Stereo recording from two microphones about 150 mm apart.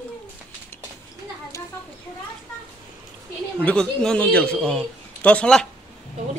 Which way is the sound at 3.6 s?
5° left (ahead or behind).